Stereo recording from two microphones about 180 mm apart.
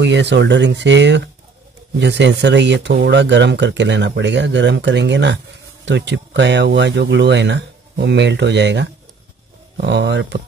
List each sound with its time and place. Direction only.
0.0 s speech: 75° right (ahead or behind)